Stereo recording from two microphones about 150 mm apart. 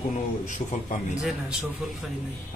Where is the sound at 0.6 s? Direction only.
30° left (ahead or behind).